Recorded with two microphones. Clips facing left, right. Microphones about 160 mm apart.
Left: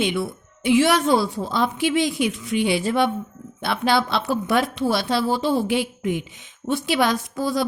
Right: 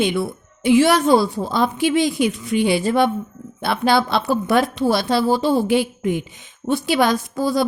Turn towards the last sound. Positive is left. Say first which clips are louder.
# right 4 dB
turn(degrees=-40)  # may be behind; listen again after turning